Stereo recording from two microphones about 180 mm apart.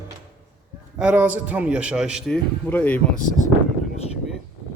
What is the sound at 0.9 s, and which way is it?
A man's voice, 5° right (ahead or behind).